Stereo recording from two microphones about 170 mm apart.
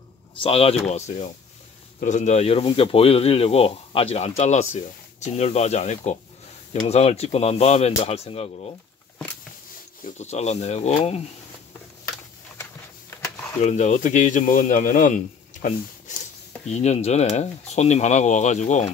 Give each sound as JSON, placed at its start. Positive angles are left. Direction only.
{"t": 0.4, "sound": "speech", "side_deg": 35}
{"t": 10.0, "sound": "speech", "side_deg": 40}
{"t": 13.6, "sound": "speech", "side_deg": 45}